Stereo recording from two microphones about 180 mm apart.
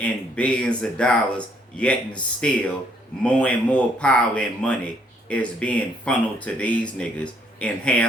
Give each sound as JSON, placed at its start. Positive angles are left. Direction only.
{"t": 0.0, "sound": "speech", "side_deg": 5}